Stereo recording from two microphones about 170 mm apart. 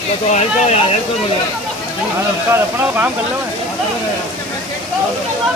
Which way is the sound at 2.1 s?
15° right (ahead or behind).